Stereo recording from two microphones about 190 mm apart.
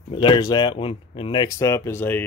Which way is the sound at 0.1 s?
25° left (ahead or behind).